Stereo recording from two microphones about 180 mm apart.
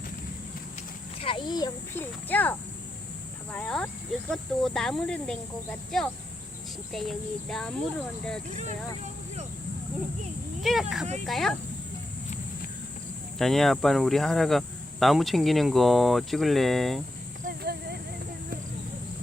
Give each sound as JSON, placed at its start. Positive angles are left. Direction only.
{"t": 1.2, "sound": "speech", "side_deg": 25}
{"t": 10.6, "sound": "speech", "side_deg": 0}
{"t": 13.4, "sound": "speech", "side_deg": 0}
{"t": 17.4, "sound": "a sound", "side_deg": -60}